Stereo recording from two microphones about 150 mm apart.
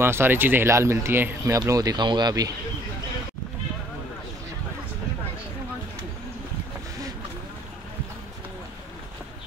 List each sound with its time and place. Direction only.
0.0 s speech: 15° right (ahead or behind)